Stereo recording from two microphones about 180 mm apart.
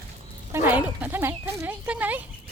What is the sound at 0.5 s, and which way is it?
Speech, 10° right (ahead or behind).